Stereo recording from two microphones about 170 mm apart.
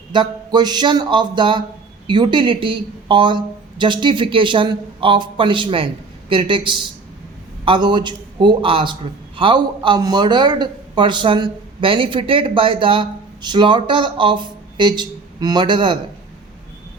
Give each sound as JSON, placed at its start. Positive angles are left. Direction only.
{"t": 0.1, "sound": "a man's voice", "side_deg": -25}